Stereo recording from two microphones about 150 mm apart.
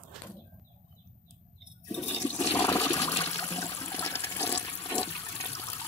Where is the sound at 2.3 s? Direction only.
15° left (ahead or behind).